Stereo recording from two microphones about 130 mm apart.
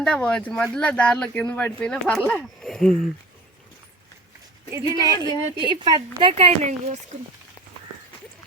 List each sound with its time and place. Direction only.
0.0 s speech: 5° left (ahead or behind)
4.7 s a woman's voice: 30° right (ahead or behind)
6.3 s speech: 60° right (ahead or behind)